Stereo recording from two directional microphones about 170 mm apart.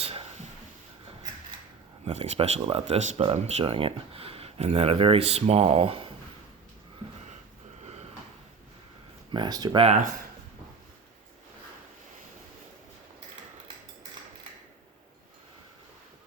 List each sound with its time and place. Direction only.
0.0 s a sound: 35° right (ahead or behind)
2.0 s speech: 35° right (ahead or behind)
9.3 s speech: 25° right (ahead or behind)